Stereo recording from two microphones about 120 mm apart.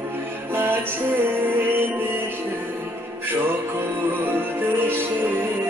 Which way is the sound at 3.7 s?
20° right (ahead or behind).